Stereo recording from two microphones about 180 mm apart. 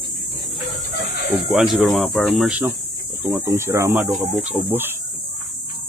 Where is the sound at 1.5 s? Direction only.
Centre (ahead or behind).